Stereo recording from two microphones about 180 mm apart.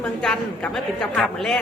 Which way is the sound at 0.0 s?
5° left (ahead or behind).